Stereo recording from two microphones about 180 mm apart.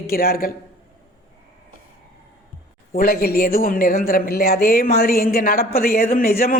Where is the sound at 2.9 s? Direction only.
55° left (ahead or behind).